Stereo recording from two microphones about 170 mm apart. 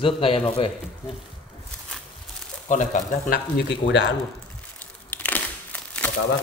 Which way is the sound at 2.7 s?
50° left (ahead or behind).